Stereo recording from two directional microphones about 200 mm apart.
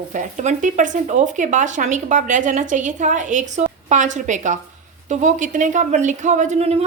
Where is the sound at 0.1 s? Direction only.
40° right (ahead or behind).